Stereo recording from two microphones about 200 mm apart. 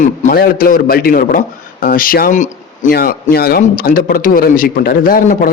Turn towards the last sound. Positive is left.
turn(degrees=45)  # may be behind; listen again after turning